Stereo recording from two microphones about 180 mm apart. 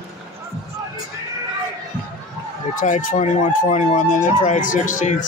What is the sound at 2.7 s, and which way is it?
Speech, 45° left (ahead or behind).